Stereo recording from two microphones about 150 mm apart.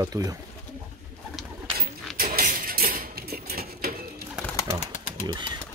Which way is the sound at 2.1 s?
85° right.